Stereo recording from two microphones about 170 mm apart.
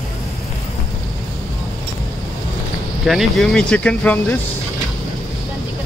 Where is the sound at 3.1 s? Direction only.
Centre (ahead or behind).